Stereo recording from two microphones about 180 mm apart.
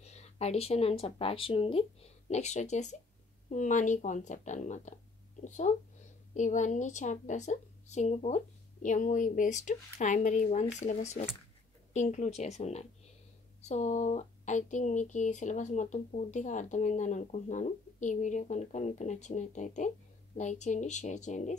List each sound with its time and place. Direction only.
0.0 s a woman's voice: 35° left (ahead or behind)